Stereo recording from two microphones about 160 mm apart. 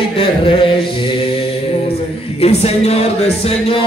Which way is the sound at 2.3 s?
40° left (ahead or behind).